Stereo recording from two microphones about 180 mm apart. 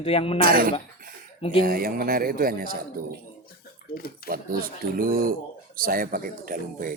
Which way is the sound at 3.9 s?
55° left (ahead or behind).